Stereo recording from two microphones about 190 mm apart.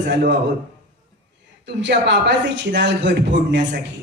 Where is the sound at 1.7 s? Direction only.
65° right (ahead or behind).